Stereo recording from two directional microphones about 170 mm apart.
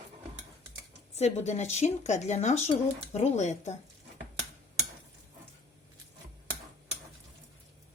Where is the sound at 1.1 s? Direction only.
40° left (ahead or behind).